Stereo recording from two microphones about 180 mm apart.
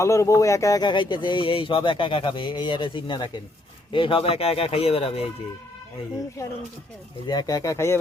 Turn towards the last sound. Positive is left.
turn(degrees=15)  # may be behind; listen again after turning